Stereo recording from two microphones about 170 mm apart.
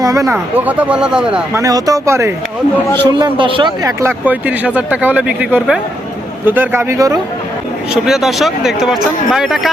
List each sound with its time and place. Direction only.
0.0 s speech: 20° right (ahead or behind)
1.5 s speech: 20° right (ahead or behind)
3.0 s a man's voice: 25° right (ahead or behind)
4.0 s speech: 10° right (ahead or behind)
8.0 s speech: centre (ahead or behind)